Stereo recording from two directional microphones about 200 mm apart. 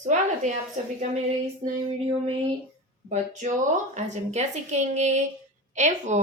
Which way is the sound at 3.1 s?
35° right (ahead or behind).